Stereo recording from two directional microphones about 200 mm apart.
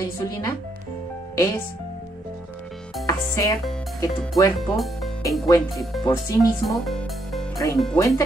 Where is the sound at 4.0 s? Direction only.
15° left (ahead or behind).